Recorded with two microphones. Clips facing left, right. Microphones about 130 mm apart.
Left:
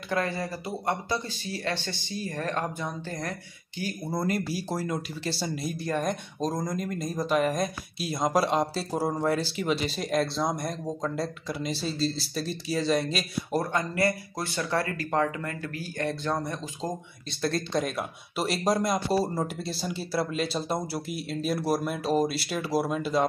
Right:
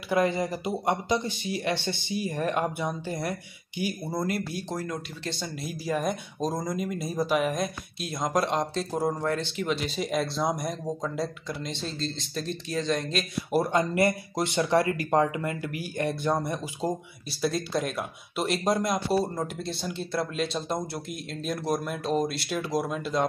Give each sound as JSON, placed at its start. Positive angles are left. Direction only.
{"t": 0.1, "sound": "speech", "side_deg": -15}
{"t": 4.1, "sound": "speech", "side_deg": 0}
{"t": 13.5, "sound": "speech", "side_deg": -15}